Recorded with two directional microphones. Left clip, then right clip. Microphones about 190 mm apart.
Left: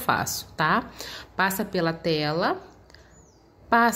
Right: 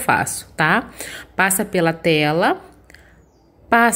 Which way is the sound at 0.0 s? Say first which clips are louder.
Right 7 dB; 10° right (ahead or behind).